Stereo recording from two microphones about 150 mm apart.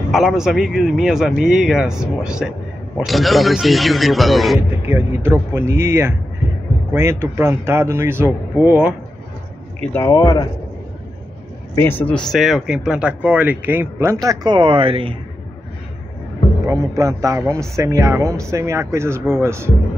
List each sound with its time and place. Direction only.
0.1 s speech: centre (ahead or behind)
4.6 s speech: 15° right (ahead or behind)
10.0 s a man's voice: 20° left (ahead or behind)
11.7 s speech: 15° left (ahead or behind); by 15.1 s 35° right (ahead or behind)
16.6 s a man's voice: 20° right (ahead or behind)